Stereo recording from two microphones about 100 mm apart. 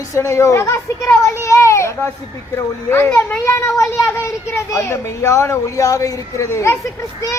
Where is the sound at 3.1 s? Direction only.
20° left (ahead or behind).